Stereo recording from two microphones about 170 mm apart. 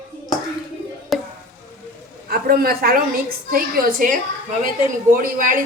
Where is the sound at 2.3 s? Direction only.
60° right (ahead or behind).